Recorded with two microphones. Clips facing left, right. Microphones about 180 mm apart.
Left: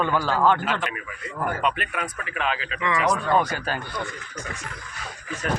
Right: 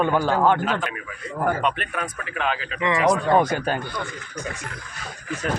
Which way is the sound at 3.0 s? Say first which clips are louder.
Right 4 dB; 20° right (ahead or behind).